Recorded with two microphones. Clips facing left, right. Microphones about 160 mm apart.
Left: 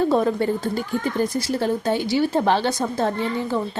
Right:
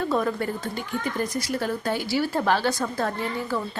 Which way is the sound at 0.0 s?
30° left (ahead or behind).